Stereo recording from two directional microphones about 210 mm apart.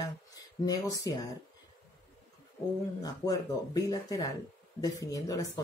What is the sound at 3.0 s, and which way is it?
Speech, 15° left (ahead or behind).